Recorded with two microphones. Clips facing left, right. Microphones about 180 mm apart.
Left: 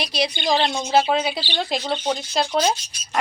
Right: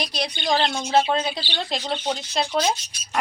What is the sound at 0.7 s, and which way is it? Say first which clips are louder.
Speech: left 1 dB; 10° left (ahead or behind).